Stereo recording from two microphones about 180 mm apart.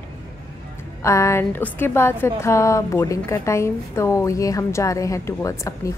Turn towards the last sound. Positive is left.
turn(degrees=15)  # may be behind; listen again after turning